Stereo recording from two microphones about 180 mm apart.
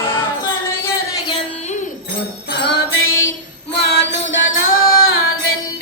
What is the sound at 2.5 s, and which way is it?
Music, 70° left (ahead or behind).